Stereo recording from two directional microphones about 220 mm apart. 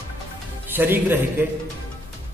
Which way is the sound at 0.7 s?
10° right (ahead or behind).